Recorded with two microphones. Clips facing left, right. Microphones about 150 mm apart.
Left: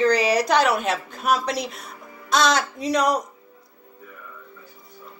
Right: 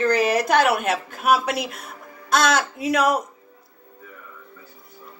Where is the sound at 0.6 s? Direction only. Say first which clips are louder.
Right 1 dB; centre (ahead or behind).